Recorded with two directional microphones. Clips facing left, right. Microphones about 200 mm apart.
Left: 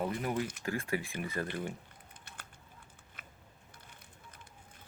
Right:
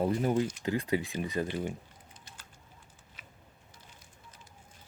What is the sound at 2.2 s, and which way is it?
Typing, 55° left (ahead or behind).